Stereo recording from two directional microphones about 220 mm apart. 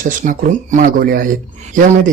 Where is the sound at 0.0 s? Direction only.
35° right (ahead or behind).